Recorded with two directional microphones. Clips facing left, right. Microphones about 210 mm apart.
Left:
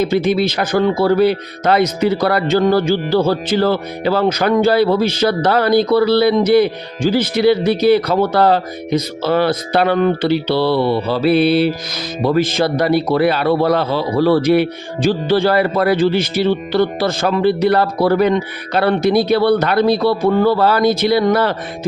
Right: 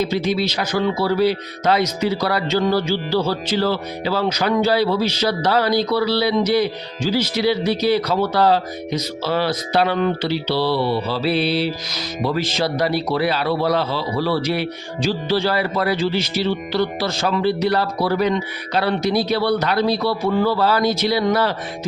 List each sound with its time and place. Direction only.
0.0 s speech: 55° left (ahead or behind)